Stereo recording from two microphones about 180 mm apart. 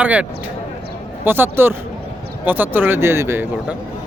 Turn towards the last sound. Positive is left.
turn(degrees=-15)  # may be behind; listen again after turning